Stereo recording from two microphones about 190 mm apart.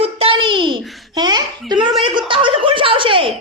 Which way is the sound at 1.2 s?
20° right (ahead or behind).